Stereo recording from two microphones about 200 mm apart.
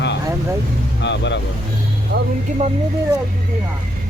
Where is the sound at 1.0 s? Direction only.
60° left (ahead or behind).